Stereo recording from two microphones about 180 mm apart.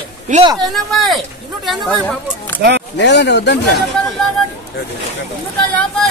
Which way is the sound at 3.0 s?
75° left (ahead or behind).